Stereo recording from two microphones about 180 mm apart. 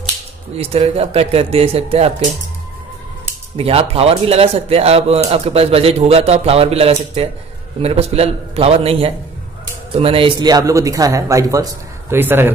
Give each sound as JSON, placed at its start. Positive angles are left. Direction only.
{"t": 0.6, "sound": "a man's voice", "side_deg": -35}
{"t": 3.5, "sound": "a man's voice", "side_deg": -35}